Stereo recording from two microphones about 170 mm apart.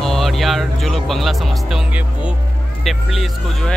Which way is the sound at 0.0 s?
Centre (ahead or behind).